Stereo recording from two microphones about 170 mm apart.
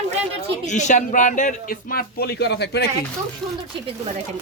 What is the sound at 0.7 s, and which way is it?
Speech, 45° left (ahead or behind).